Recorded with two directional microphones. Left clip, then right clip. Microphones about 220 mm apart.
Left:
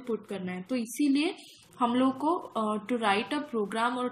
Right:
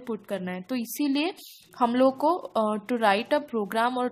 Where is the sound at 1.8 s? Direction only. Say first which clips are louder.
Right 5 dB; 50° right (ahead or behind).